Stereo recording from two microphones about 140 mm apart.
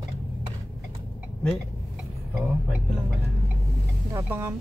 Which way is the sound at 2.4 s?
5° right (ahead or behind).